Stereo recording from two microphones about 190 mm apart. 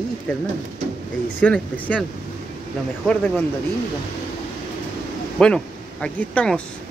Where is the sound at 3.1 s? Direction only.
10° left (ahead or behind).